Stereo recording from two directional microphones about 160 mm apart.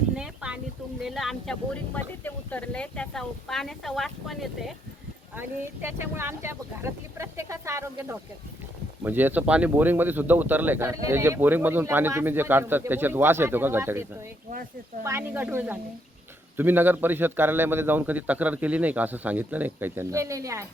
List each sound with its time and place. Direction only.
0.2 s a sound: 5° right (ahead or behind)
1.0 s speech: centre (ahead or behind)
5.4 s speech: 15° right (ahead or behind)